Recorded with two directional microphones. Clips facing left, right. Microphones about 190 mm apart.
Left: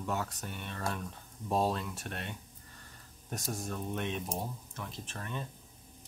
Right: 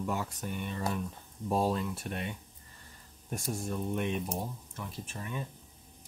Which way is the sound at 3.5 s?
10° right (ahead or behind).